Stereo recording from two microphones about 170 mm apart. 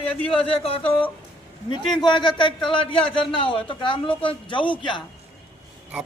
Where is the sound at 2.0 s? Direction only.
25° left (ahead or behind).